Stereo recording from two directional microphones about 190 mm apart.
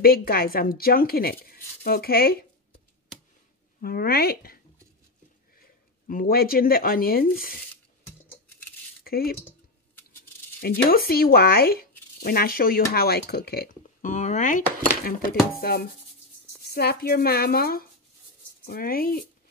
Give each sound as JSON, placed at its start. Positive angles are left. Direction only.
{"t": 0.0, "sound": "speech", "side_deg": 55}
{"t": 3.8, "sound": "speech", "side_deg": 50}
{"t": 5.6, "sound": "speech", "side_deg": 50}
{"t": 9.0, "sound": "speech", "side_deg": 50}
{"t": 10.6, "sound": "speech", "side_deg": 55}
{"t": 15.5, "sound": "speech", "side_deg": 55}